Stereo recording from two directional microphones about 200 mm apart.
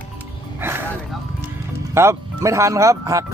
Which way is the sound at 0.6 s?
10° right (ahead or behind).